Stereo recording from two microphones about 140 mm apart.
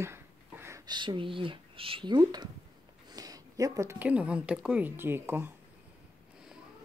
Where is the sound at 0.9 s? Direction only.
35° right (ahead or behind).